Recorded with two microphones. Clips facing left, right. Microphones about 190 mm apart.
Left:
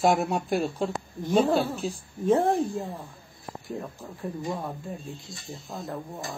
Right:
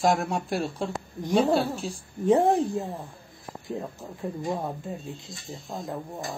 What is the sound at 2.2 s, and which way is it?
Speech, 20° right (ahead or behind).